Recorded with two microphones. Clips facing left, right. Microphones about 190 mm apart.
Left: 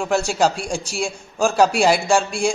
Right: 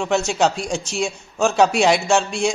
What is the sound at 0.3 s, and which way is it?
A man's voice, 5° left (ahead or behind).